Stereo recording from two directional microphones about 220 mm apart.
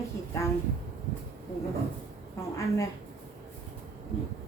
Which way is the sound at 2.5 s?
15° left (ahead or behind).